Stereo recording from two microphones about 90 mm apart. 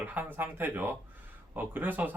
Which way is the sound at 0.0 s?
20° right (ahead or behind).